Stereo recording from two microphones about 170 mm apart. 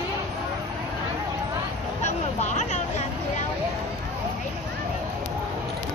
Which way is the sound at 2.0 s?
45° left (ahead or behind).